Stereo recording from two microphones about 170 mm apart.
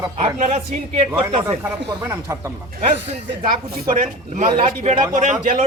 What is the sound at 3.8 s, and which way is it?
A man's voice, 50° right (ahead or behind).